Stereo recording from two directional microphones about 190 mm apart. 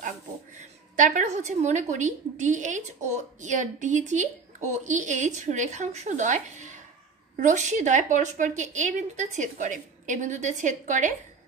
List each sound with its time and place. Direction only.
0.9 s a woman's voice: 40° right (ahead or behind)